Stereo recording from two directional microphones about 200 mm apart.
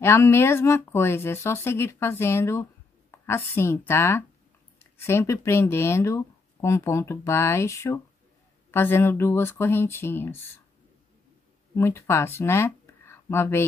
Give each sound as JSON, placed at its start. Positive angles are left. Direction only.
{"t": 0.0, "sound": "a woman's voice", "side_deg": 10}
{"t": 11.7, "sound": "speech", "side_deg": 15}